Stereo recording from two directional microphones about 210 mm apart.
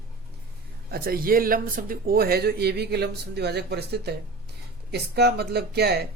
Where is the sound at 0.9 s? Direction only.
45° right (ahead or behind).